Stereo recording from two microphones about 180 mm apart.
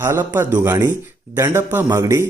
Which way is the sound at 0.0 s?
10° right (ahead or behind).